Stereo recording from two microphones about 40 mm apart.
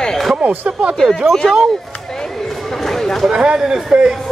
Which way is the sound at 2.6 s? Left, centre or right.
Centre.